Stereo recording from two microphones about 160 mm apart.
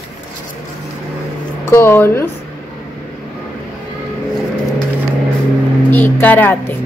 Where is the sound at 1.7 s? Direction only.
15° left (ahead or behind).